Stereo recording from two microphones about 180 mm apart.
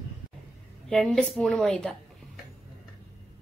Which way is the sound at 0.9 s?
5° left (ahead or behind).